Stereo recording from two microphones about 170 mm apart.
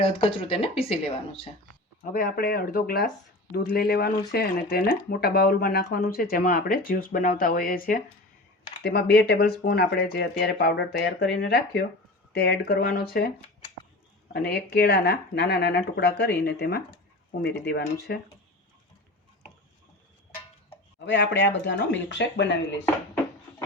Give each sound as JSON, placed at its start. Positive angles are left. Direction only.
{"t": 0.0, "sound": "speech", "side_deg": 35}
{"t": 2.1, "sound": "speech", "side_deg": 60}
{"t": 8.8, "sound": "speech", "side_deg": 70}
{"t": 14.3, "sound": "speech", "side_deg": 70}
{"t": 21.0, "sound": "speech", "side_deg": 90}